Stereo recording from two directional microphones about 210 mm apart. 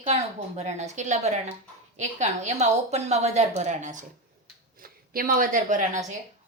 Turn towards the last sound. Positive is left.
turn(degrees=-35)  # may be behind; listen again after turning